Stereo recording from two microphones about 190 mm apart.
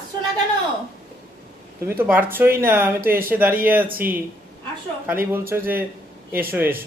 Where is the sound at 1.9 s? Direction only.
10° right (ahead or behind).